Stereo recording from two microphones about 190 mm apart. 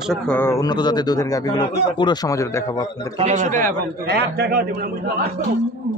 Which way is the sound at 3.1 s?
40° right (ahead or behind).